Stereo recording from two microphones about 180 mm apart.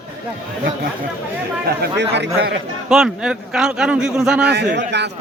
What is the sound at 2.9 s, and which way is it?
A man's voice, centre (ahead or behind).